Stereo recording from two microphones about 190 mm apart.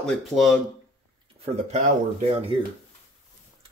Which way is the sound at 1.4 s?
35° right (ahead or behind).